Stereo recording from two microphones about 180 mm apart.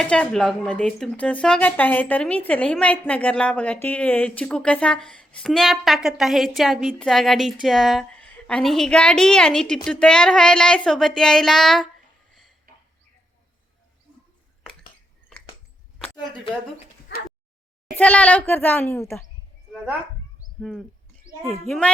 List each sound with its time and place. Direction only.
0.0 s speech: 5° left (ahead or behind)
12.3 s a sound: centre (ahead or behind)
17.9 s a woman's voice: 10° left (ahead or behind)
20.6 s a woman's voice: centre (ahead or behind)